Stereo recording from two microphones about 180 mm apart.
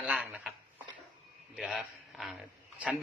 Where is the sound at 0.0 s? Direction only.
5° right (ahead or behind).